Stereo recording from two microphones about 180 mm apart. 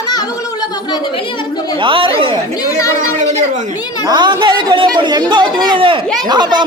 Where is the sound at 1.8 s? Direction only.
30° right (ahead or behind).